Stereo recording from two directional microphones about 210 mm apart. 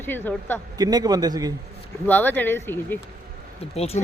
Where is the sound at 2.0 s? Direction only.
10° left (ahead or behind).